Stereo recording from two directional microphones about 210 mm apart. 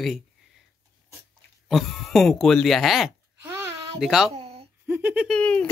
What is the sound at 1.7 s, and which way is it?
Speech, centre (ahead or behind).